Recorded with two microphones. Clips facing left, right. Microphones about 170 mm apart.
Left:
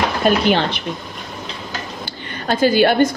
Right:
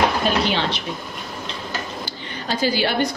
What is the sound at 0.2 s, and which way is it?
Speech, 50° left (ahead or behind).